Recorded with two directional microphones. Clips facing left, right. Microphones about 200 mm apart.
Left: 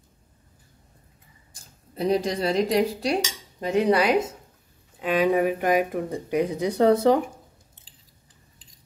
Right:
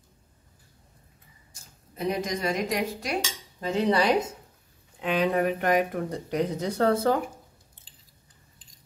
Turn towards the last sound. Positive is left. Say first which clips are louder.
# left 5 dB
turn(degrees=20)  # may be behind; listen again after turning